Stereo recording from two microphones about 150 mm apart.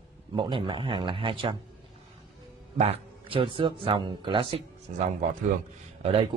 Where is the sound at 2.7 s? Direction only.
40° right (ahead or behind).